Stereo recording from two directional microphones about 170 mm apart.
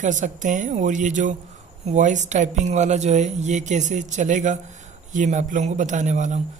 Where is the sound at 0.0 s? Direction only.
45° right (ahead or behind).